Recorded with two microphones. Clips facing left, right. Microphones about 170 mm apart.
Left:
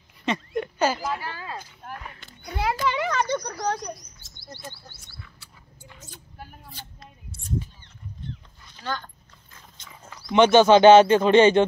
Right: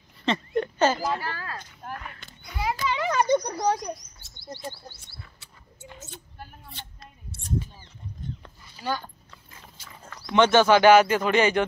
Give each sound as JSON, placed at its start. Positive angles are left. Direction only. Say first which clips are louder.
{"t": 0.2, "sound": "speech", "louder": "right 1 dB", "side_deg": 10}
{"t": 2.5, "sound": "a child's voice", "louder": "left 3 dB", "side_deg": 60}
{"t": 3.1, "sound": "speech", "louder": "right 3 dB", "side_deg": -15}
{"t": 4.6, "sound": "a sound", "louder": "right 4 dB", "side_deg": -35}
{"t": 8.7, "sound": "speech", "louder": "right 2 dB", "side_deg": -10}
{"t": 9.8, "sound": "dog", "louder": "left 2 dB", "side_deg": -5}
{"t": 10.3, "sound": "speech", "louder": "left 3 dB", "side_deg": 20}